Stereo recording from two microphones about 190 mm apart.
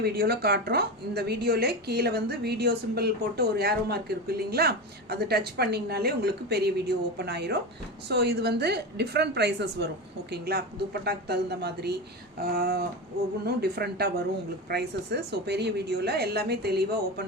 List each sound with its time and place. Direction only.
0.0 s a woman's voice: 55° right (ahead or behind)